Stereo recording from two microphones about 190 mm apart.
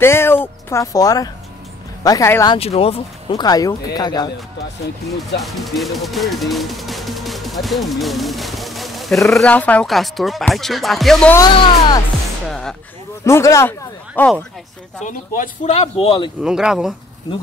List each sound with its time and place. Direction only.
0.0 s speech: 10° left (ahead or behind)
2.5 s speech: 30° left (ahead or behind)
5.4 s speech: centre (ahead or behind)
11.3 s speech: 25° left (ahead or behind)
12.4 s music: 5° left (ahead or behind)
13.2 s a man's voice: 15° left (ahead or behind)
15.0 s speech: 45° left (ahead or behind)
16.4 s speech: 5° right (ahead or behind)